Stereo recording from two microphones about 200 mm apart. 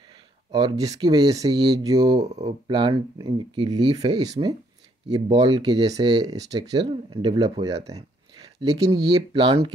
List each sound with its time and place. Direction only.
0.5 s speech: 20° right (ahead or behind)
2.1 s speech: 30° right (ahead or behind)